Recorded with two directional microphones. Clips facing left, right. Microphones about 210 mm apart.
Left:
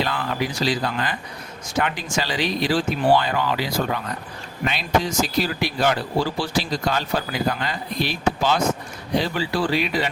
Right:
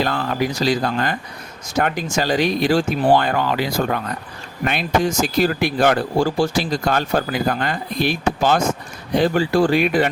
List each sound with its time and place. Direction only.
0.0 s speech: 45° right (ahead or behind)